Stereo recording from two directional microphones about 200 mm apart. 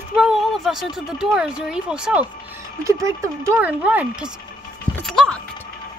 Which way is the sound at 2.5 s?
15° right (ahead or behind).